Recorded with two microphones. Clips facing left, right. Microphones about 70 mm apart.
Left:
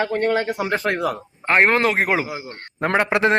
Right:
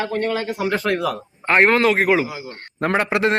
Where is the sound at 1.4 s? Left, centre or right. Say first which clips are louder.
Right 1 dB; centre.